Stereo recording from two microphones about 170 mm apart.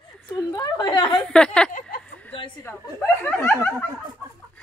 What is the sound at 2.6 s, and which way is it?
Chuckle, 15° left (ahead or behind).